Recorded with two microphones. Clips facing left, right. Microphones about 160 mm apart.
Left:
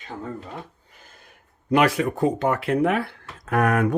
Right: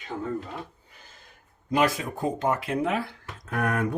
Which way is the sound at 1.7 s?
65° left (ahead or behind).